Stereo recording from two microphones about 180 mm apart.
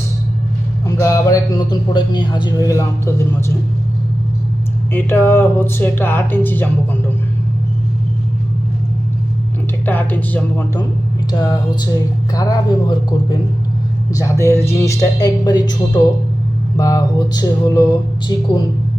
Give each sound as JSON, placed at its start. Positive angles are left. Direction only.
{"t": 0.9, "sound": "speech", "side_deg": 20}
{"t": 4.9, "sound": "speech", "side_deg": 10}
{"t": 9.8, "sound": "speech", "side_deg": 10}
{"t": 11.3, "sound": "speech", "side_deg": 25}
{"t": 16.7, "sound": "speech", "side_deg": 20}